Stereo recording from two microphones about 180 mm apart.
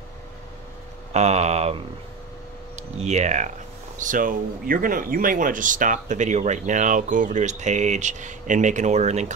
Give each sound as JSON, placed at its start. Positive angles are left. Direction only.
{"t": 1.1, "sound": "speech", "side_deg": -40}